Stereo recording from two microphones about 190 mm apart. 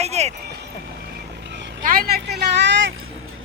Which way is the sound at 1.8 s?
50° right (ahead or behind).